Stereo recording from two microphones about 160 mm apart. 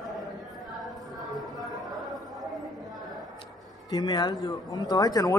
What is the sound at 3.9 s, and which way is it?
Speech, 25° left (ahead or behind).